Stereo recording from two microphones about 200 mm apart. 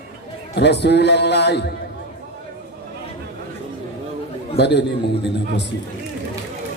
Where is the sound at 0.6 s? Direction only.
55° left (ahead or behind).